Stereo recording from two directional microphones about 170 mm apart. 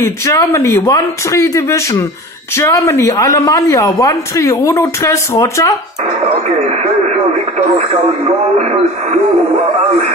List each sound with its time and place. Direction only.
0.2 s a man's voice: 15° left (ahead or behind)
6.7 s speech: 40° right (ahead or behind)